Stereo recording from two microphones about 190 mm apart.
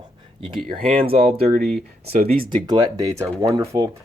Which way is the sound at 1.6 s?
Centre (ahead or behind).